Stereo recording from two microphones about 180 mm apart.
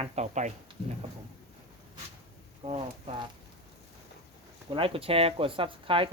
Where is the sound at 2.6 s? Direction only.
30° right (ahead or behind).